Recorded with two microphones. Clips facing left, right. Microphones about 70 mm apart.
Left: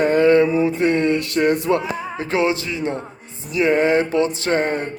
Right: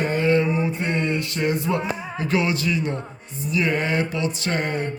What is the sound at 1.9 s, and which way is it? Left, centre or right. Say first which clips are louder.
Music: left 2 dB; left.